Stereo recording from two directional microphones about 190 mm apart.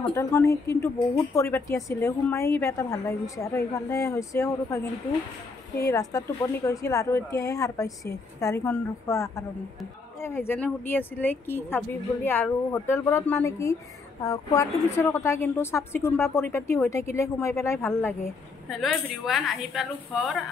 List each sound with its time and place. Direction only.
0.1 s speech: 15° left (ahead or behind)
18.7 s a woman's voice: centre (ahead or behind)